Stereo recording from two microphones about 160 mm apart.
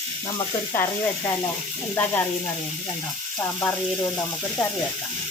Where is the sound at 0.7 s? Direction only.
15° left (ahead or behind).